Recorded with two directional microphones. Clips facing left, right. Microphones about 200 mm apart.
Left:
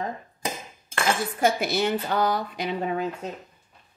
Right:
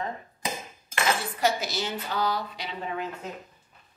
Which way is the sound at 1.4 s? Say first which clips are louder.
Left 6 dB; 55° left (ahead or behind).